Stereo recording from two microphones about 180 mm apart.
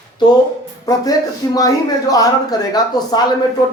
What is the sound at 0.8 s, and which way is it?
Speech, 20° left (ahead or behind).